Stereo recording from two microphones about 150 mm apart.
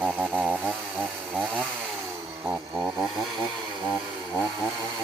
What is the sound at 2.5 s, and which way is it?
Chainsaw, 5° right (ahead or behind).